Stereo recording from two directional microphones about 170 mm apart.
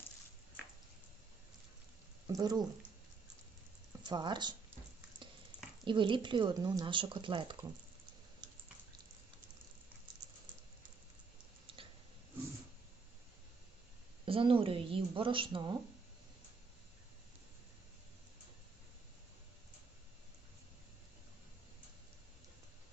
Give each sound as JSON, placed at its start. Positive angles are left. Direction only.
{"t": 2.2, "sound": "speech", "side_deg": -25}
{"t": 4.1, "sound": "speech", "side_deg": -25}
{"t": 5.2, "sound": "stir", "side_deg": -30}
{"t": 5.8, "sound": "speech", "side_deg": -30}
{"t": 8.4, "sound": "drip", "side_deg": -25}
{"t": 10.2, "sound": "a sound", "side_deg": -25}
{"t": 14.3, "sound": "a woman's voice", "side_deg": -30}